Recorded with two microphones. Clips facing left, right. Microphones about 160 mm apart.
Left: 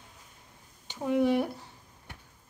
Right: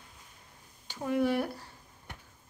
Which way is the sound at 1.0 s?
15° left (ahead or behind).